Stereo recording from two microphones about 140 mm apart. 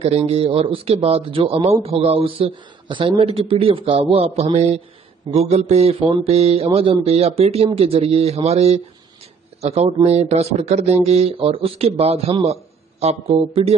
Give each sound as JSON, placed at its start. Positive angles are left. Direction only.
{"t": 0.2, "sound": "speech", "side_deg": -45}